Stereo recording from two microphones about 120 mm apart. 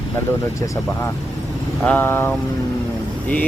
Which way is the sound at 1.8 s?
15° left (ahead or behind).